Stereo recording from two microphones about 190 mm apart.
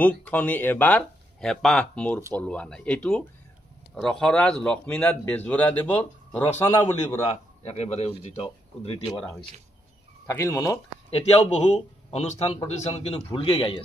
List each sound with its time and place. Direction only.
0.0 s speech: 10° left (ahead or behind)
7.6 s speech: 35° left (ahead or behind)
10.2 s speech: 15° left (ahead or behind)
11.1 s a man's voice: 30° left (ahead or behind)